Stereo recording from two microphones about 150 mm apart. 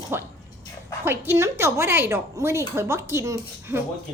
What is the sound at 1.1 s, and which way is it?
A woman's voice, 15° right (ahead or behind).